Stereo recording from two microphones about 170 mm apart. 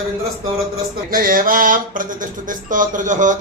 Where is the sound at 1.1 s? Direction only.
55° right (ahead or behind).